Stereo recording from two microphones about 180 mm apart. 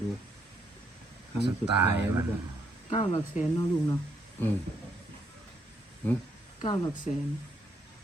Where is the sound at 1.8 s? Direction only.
10° right (ahead or behind).